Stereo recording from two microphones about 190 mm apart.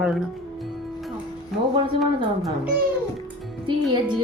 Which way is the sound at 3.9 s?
20° right (ahead or behind).